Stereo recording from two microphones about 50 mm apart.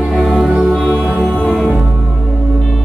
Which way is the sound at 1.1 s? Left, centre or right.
Centre.